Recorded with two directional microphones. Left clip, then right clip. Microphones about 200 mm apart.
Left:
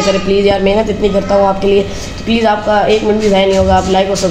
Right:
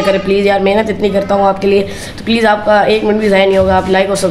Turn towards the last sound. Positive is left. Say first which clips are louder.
# even
turn(degrees=-10)  # may be behind; listen again after turning